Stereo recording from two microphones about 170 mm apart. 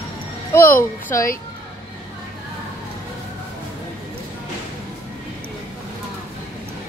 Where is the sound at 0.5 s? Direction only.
15° left (ahead or behind).